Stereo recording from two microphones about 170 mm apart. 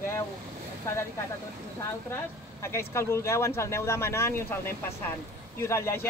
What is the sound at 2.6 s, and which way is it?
Speech, 15° left (ahead or behind).